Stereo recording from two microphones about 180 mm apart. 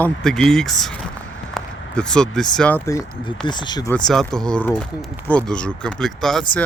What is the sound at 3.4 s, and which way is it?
Speech, 25° left (ahead or behind).